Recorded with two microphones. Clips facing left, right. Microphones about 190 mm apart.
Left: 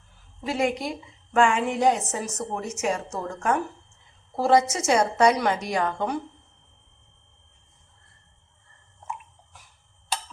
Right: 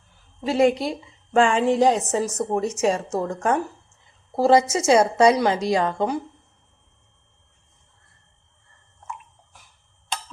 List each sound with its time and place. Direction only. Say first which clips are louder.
0.4 s a woman's voice: right 6 dB; 30° right (ahead or behind)